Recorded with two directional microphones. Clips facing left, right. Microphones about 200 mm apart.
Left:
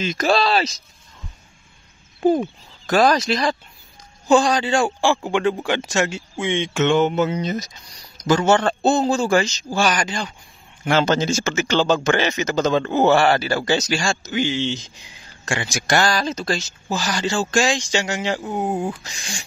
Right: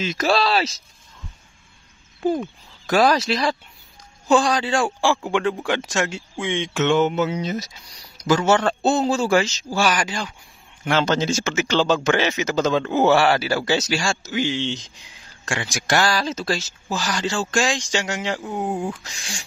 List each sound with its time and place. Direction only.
0.0 s a man's voice: 5° right (ahead or behind)
2.9 s a man's voice: 5° right (ahead or behind)